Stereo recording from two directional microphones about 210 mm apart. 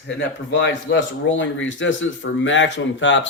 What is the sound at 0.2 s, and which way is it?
Speech, 60° left (ahead or behind).